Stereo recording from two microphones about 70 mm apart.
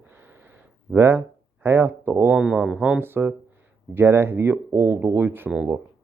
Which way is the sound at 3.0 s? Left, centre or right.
Right.